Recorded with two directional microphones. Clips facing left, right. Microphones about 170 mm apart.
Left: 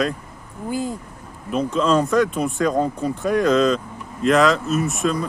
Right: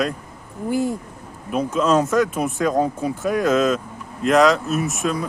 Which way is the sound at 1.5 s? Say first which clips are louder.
Even; 5° right (ahead or behind).